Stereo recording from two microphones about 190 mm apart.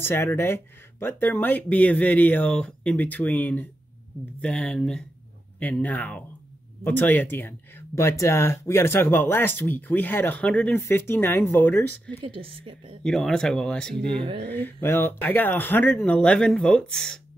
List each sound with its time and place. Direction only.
0.0 s speech: 10° left (ahead or behind)
12.3 s a woman's voice: 30° right (ahead or behind)
13.0 s speech: 5° left (ahead or behind)